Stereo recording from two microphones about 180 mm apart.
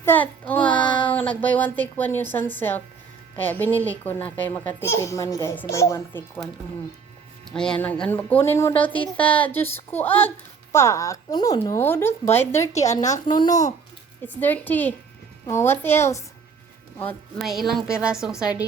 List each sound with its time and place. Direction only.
0.0 s speech: 10° left (ahead or behind)
0.8 s child singing: 25° left (ahead or behind)
1.1 s speech: 10° left (ahead or behind)
7.5 s speech: 5° left (ahead or behind)
12.9 s a woman's voice: 40° left (ahead or behind)
14.3 s speech: 10° left (ahead or behind)
17.4 s a woman's voice: centre (ahead or behind)